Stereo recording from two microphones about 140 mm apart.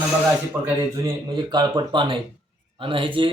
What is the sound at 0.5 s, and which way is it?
A man's voice, 20° right (ahead or behind).